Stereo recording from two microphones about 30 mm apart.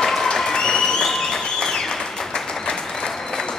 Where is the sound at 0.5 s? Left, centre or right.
Left.